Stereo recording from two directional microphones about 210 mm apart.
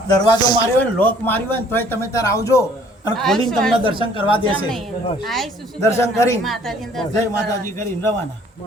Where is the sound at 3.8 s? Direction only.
25° left (ahead or behind).